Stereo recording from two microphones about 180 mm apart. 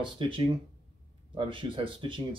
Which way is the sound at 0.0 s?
30° right (ahead or behind).